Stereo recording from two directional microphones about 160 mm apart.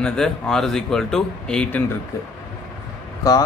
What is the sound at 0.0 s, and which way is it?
Speech, 5° left (ahead or behind).